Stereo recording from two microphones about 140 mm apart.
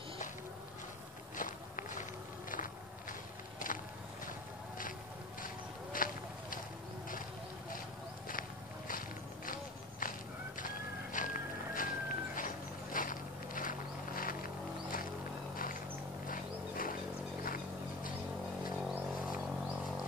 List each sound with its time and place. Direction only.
1.3 s walk: 75° left (ahead or behind)
5.9 s a sound: 80° left
8.3 s walk: 80° left
9.5 s horse: 80° left
10.6 s horse: 70° left (ahead or behind); by 15.0 s 90° left
15.5 s a sound: 85° left